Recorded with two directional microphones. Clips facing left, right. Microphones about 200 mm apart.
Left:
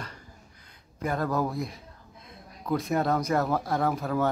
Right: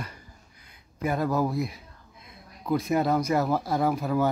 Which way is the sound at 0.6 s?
10° right (ahead or behind).